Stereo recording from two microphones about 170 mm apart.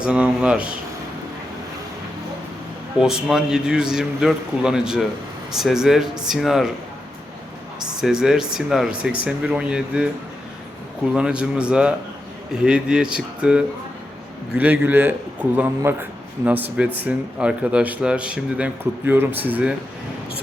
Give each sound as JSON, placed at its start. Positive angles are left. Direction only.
{"t": 0.0, "sound": "speech", "side_deg": -5}
{"t": 3.0, "sound": "a man's voice", "side_deg": -5}
{"t": 8.0, "sound": "a man's voice", "side_deg": -5}
{"t": 11.1, "sound": "a man's voice", "side_deg": -5}